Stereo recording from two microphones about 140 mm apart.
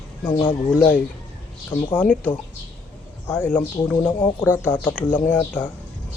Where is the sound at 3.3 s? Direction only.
10° left (ahead or behind).